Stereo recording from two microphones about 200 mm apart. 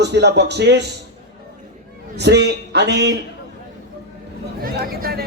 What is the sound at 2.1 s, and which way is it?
A man's voice, 60° right (ahead or behind).